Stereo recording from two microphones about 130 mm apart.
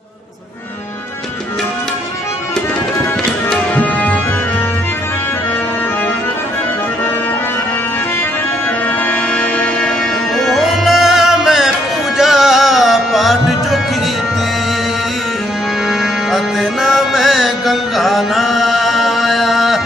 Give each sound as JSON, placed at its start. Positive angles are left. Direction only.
{"t": 3.4, "sound": "tabla", "side_deg": 10}
{"t": 8.8, "sound": "music", "side_deg": 10}
{"t": 15.9, "sound": "music", "side_deg": 0}